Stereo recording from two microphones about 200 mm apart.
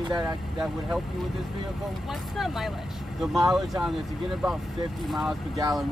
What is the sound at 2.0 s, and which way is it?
Speech, centre (ahead or behind).